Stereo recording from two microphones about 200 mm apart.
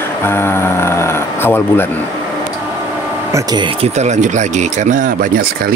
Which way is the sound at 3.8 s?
35° right (ahead or behind).